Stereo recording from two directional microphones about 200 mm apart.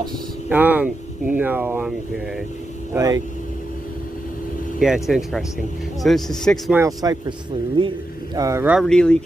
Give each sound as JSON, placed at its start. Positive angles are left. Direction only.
{"t": 0.5, "sound": "speech", "side_deg": -10}
{"t": 4.7, "sound": "speech", "side_deg": 0}
{"t": 6.8, "sound": "speech", "side_deg": -20}